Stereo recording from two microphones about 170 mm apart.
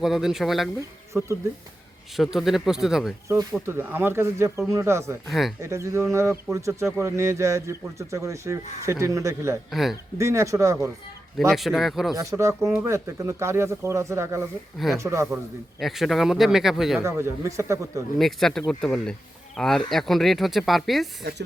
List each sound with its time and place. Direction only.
0.0 s speech: centre (ahead or behind)
0.8 s speech: 15° right (ahead or behind)
2.1 s speech: centre (ahead or behind)
3.7 s a man's voice: 15° right (ahead or behind)
5.3 s speech: centre (ahead or behind)
5.6 s a man's voice: 15° right (ahead or behind)
9.6 s speech: centre (ahead or behind)
10.2 s a man's voice: 15° right (ahead or behind)
11.3 s speech: centre (ahead or behind)
12.1 s a man's voice: 20° right (ahead or behind)
15.8 s speech: centre (ahead or behind)
17.0 s a man's voice: 15° right (ahead or behind)
18.2 s speech: centre (ahead or behind)